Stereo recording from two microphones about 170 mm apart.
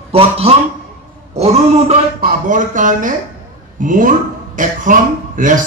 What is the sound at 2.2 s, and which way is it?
Speech, 50° right (ahead or behind).